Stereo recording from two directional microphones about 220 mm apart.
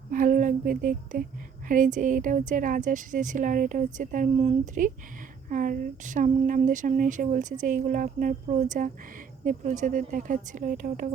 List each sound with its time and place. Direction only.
0.1 s speech: 40° right (ahead or behind)